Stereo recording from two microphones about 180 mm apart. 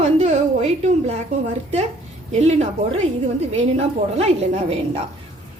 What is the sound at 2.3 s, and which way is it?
A woman's voice, 40° right (ahead or behind).